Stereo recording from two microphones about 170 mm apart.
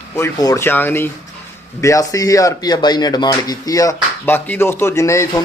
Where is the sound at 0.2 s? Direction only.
20° left (ahead or behind).